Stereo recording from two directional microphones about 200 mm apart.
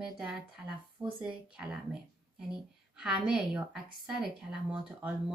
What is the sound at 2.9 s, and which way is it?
A woman's voice, 5° right (ahead or behind).